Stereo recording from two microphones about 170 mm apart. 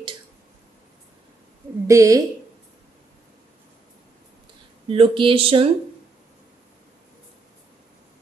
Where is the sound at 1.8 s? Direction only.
20° right (ahead or behind).